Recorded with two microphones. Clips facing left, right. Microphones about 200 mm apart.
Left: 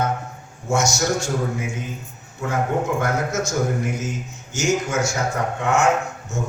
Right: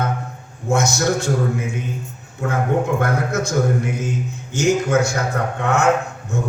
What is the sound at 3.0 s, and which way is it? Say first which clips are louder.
Speech: right 2 dB; 60° right (ahead or behind).